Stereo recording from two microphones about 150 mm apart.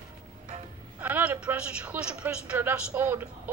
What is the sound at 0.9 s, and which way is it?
A woman's voice, 10° right (ahead or behind).